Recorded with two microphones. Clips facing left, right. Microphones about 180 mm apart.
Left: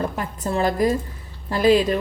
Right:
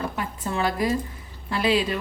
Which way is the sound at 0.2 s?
40° left (ahead or behind).